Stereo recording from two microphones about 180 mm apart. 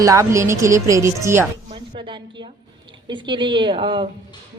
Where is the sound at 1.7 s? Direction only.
25° right (ahead or behind).